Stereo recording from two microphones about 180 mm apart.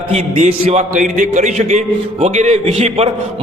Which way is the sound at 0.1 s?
35° right (ahead or behind).